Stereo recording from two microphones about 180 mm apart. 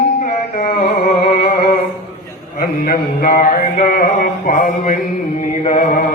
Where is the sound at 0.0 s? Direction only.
50° left (ahead or behind).